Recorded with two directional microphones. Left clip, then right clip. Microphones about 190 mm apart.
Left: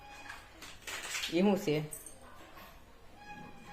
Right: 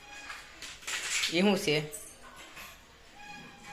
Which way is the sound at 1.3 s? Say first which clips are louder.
Right 2 dB; centre (ahead or behind).